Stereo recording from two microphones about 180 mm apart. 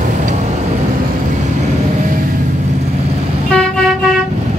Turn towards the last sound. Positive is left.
turn(degrees=5)  # may be behind; listen again after turning